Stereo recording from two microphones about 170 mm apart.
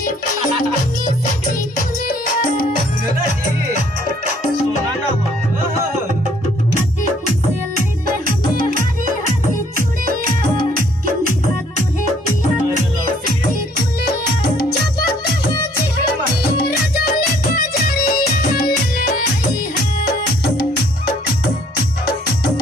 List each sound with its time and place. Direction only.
17.6 s music: 65° left (ahead or behind)